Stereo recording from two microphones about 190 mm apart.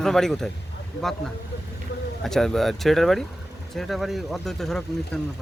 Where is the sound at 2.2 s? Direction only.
Centre (ahead or behind).